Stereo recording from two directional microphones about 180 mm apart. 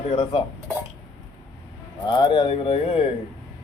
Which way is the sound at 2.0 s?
25° left (ahead or behind).